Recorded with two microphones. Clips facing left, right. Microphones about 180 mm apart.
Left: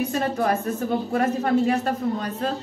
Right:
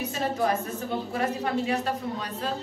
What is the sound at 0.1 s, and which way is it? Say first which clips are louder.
A woman's voice: left 3 dB; 50° left (ahead or behind).